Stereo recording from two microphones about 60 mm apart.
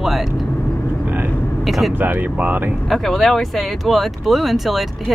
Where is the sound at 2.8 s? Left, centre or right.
Centre.